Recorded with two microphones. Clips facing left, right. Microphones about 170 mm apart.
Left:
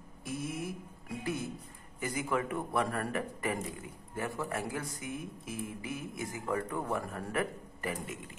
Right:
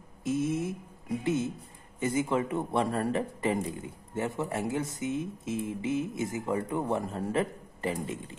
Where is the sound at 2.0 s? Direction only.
25° right (ahead or behind).